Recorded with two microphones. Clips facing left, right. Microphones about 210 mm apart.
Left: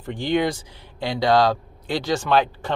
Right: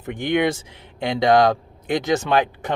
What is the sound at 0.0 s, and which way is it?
Speech, 20° right (ahead or behind).